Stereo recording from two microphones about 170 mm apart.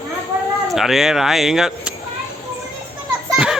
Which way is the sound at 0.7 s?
Centre (ahead or behind).